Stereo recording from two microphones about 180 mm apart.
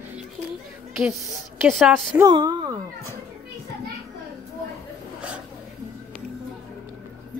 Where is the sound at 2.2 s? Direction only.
25° right (ahead or behind).